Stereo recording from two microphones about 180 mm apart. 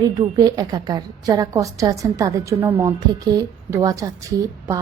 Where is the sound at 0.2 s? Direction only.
20° right (ahead or behind).